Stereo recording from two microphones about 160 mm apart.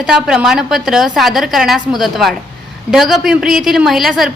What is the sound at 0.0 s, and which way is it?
A woman's voice, 5° right (ahead or behind).